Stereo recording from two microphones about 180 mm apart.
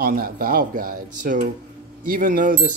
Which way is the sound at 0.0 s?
55° right (ahead or behind).